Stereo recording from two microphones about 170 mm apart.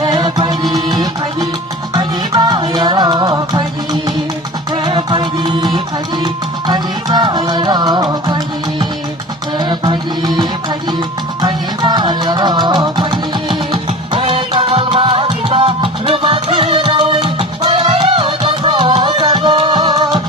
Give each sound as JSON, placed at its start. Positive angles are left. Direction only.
{"t": 0.0, "sound": "music", "side_deg": -25}
{"t": 9.6, "sound": "music", "side_deg": -25}